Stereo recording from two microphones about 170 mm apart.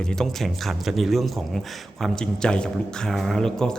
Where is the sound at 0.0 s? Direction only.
5° left (ahead or behind).